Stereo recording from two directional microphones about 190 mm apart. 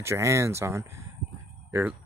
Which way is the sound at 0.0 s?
15° right (ahead or behind).